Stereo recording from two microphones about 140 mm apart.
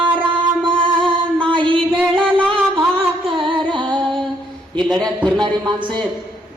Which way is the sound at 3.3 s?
35° right (ahead or behind).